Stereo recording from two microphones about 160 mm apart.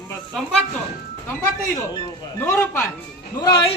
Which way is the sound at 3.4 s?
30° left (ahead or behind).